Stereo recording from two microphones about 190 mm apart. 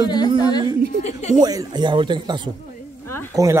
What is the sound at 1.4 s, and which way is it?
A man's voice, 20° right (ahead or behind).